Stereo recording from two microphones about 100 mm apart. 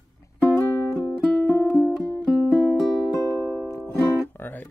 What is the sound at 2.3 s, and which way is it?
Music, 15° right (ahead or behind).